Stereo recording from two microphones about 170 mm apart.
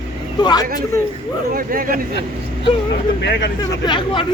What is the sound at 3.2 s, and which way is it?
Speech, 90° left.